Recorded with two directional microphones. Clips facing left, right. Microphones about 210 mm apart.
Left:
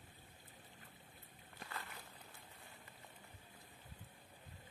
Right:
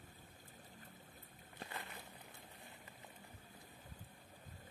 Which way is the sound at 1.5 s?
20° right (ahead or behind).